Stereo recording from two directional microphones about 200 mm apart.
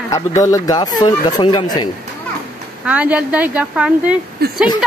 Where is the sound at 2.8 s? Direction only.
5° right (ahead or behind).